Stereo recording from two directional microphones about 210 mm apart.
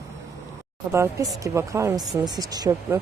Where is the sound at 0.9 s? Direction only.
15° right (ahead or behind).